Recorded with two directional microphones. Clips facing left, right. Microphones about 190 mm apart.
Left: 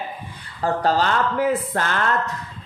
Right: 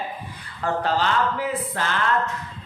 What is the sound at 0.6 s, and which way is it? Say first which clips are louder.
Speech: left 3 dB; 40° left (ahead or behind).